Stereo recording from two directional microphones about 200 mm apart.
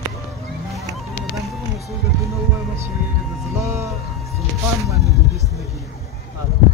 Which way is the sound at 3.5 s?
15° right (ahead or behind).